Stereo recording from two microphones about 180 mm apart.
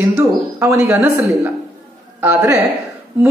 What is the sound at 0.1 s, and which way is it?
Speech, 15° right (ahead or behind).